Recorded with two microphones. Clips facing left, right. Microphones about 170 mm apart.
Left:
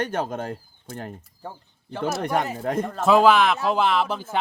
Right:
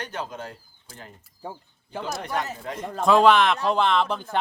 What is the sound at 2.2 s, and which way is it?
Speech, 55° left (ahead or behind).